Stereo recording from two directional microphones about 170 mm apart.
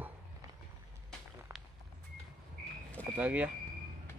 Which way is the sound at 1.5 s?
15° right (ahead or behind).